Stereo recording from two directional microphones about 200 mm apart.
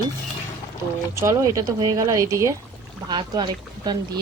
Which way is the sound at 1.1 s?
15° right (ahead or behind).